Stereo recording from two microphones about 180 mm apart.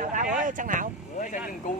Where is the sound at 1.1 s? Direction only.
45° left (ahead or behind).